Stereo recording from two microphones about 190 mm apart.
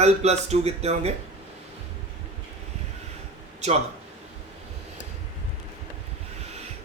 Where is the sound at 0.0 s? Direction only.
35° right (ahead or behind).